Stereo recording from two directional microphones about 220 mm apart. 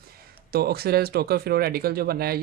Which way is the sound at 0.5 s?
45° right (ahead or behind).